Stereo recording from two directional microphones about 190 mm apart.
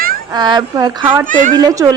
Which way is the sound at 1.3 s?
40° right (ahead or behind).